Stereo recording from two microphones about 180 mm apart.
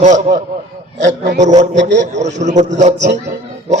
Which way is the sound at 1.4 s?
40° right (ahead or behind).